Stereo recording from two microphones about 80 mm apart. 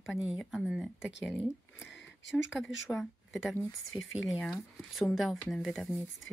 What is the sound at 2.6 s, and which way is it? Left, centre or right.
Speech, centre.